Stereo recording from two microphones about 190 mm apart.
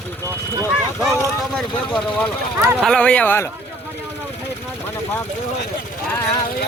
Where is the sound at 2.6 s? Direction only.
15° right (ahead or behind).